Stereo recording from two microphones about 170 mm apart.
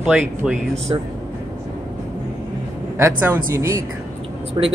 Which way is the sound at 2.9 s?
15° right (ahead or behind).